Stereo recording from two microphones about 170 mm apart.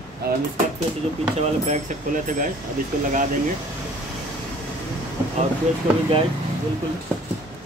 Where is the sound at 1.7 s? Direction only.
50° right (ahead or behind).